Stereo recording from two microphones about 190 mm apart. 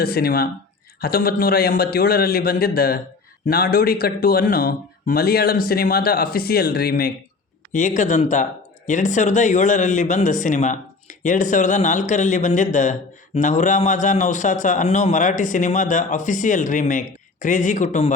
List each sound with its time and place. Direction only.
0.0 s speech: 55° left (ahead or behind)
7.7 s a man's voice: 40° left (ahead or behind)